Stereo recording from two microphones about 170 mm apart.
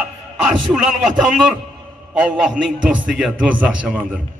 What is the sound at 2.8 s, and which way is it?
A man's voice, 5° right (ahead or behind).